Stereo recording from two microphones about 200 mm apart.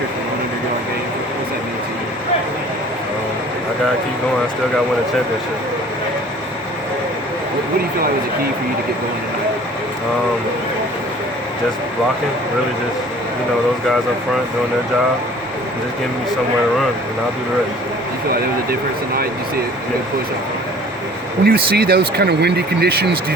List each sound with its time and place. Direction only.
18.7 s speech: 50° right (ahead or behind)
21.4 s speech: 50° right (ahead or behind)